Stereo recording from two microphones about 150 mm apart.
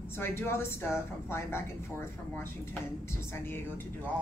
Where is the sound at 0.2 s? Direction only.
15° left (ahead or behind).